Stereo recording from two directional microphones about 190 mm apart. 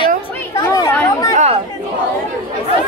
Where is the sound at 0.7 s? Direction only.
15° left (ahead or behind).